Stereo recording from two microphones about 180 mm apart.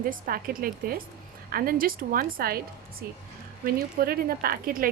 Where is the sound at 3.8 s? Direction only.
55° right (ahead or behind).